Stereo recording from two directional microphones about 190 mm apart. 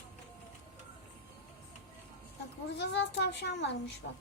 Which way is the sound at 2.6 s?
65° left (ahead or behind).